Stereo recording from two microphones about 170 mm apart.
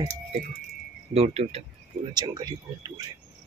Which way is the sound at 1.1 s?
35° right (ahead or behind).